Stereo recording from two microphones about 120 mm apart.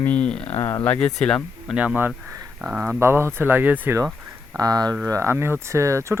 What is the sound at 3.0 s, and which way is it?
Speech, 20° right (ahead or behind).